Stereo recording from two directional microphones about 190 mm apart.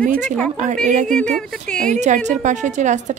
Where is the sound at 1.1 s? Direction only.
5° left (ahead or behind).